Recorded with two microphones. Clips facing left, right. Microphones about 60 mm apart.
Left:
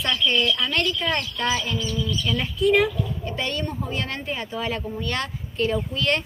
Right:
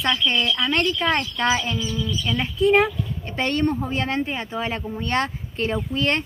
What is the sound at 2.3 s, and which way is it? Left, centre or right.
Speech, right.